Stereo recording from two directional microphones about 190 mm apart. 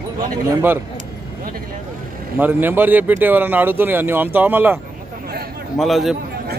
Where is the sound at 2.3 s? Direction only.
10° right (ahead or behind).